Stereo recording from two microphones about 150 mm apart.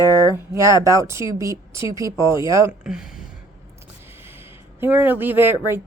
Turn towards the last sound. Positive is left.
turn(degrees=-15)  # may be behind; listen again after turning